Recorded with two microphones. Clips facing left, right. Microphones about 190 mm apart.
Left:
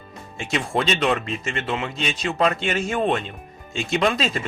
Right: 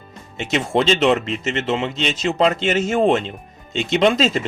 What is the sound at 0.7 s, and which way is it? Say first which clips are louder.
A man's voice: right 6 dB; 25° right (ahead or behind).